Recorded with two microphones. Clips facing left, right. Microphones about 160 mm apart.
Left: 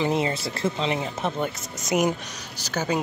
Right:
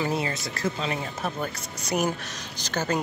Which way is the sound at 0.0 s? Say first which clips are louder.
Left 4 dB; 25° left (ahead or behind).